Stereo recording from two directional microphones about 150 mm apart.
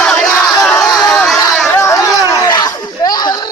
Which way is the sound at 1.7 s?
20° left (ahead or behind).